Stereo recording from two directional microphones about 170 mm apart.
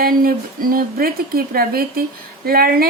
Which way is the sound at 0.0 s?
60° right (ahead or behind).